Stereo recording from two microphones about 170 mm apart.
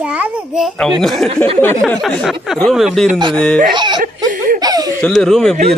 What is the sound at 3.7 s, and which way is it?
Speech, 25° right (ahead or behind).